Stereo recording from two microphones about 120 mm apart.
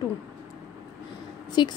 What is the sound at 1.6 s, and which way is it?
Speech, 40° left (ahead or behind).